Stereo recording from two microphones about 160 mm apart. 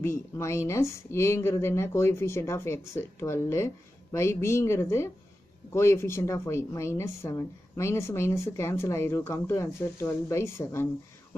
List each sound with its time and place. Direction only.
0.0 s a woman's voice: 15° left (ahead or behind)